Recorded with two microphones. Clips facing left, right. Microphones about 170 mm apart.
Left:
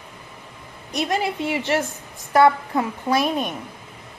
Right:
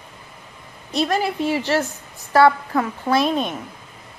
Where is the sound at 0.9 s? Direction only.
20° left (ahead or behind).